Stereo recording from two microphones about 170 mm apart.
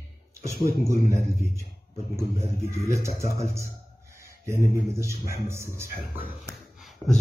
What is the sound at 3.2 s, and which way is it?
Speech, 15° right (ahead or behind).